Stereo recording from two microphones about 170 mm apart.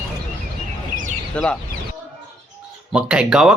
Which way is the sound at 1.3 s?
5° left (ahead or behind).